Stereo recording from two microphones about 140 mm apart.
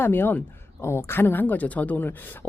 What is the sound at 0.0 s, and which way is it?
Speech, 15° left (ahead or behind).